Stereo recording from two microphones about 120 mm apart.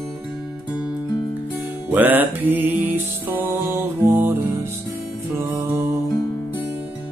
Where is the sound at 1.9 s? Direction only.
15° right (ahead or behind).